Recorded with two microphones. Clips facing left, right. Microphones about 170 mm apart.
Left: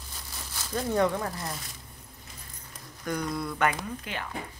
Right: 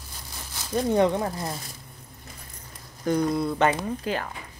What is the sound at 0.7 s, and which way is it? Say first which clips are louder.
Speech: right 5 dB; 20° right (ahead or behind).